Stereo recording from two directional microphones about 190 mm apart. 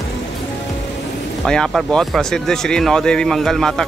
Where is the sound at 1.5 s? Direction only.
5° left (ahead or behind).